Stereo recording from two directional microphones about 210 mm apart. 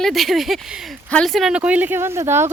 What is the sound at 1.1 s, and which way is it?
Speech, centre (ahead or behind).